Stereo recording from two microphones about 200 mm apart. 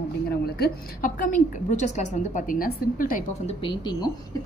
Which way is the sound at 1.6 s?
35° left (ahead or behind).